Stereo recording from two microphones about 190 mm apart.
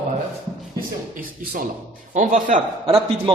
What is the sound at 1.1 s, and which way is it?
A man's voice, 50° right (ahead or behind).